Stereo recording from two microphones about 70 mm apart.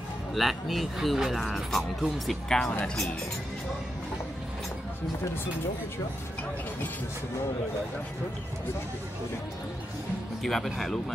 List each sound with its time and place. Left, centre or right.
0.3 s speech: centre
10.4 s speech: centre